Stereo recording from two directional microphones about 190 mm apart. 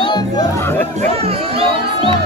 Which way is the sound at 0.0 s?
20° left (ahead or behind).